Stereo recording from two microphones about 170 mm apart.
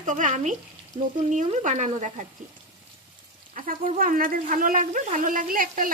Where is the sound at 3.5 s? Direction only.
50° right (ahead or behind).